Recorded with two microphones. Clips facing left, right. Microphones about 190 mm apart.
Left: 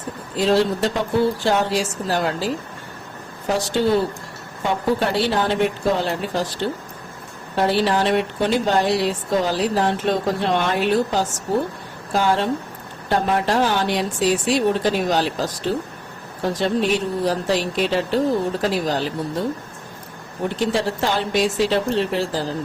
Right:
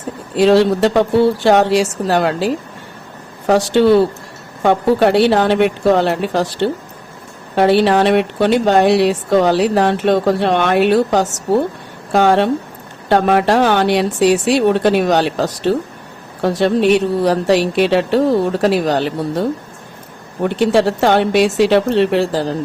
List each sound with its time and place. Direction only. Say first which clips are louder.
0.3 s speech: right 7 dB; 70° right (ahead or behind)